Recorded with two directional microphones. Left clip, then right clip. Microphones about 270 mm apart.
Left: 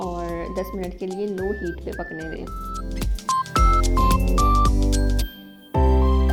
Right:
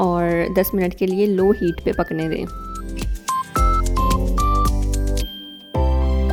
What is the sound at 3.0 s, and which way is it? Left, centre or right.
Music, centre.